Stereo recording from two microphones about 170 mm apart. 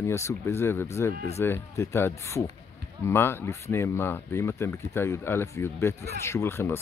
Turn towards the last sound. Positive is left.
turn(degrees=15)  # may be behind; listen again after turning